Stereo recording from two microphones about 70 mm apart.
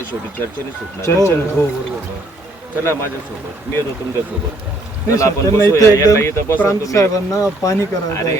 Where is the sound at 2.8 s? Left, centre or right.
Left.